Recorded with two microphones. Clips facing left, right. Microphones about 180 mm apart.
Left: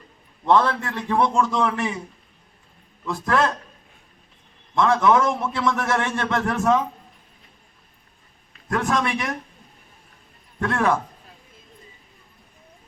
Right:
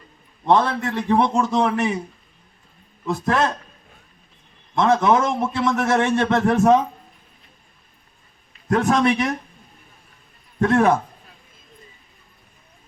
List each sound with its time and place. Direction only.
0.5 s a man's voice: 20° right (ahead or behind)
3.1 s a man's voice: 20° right (ahead or behind)
4.8 s a man's voice: 25° right (ahead or behind)
8.7 s a man's voice: 25° right (ahead or behind)
10.6 s a man's voice: 25° right (ahead or behind)